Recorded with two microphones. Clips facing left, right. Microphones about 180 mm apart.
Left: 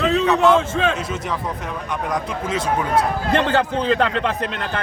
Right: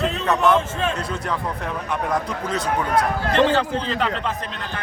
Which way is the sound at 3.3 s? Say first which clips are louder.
Right 1 dB; 55° left (ahead or behind).